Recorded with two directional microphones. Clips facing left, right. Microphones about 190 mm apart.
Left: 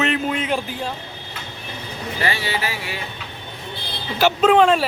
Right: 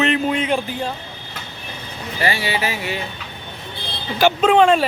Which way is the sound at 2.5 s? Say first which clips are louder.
Right 3 dB; 20° right (ahead or behind).